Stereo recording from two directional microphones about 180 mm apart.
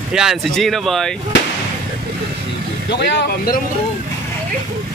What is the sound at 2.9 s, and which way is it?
Speech, 75° left (ahead or behind).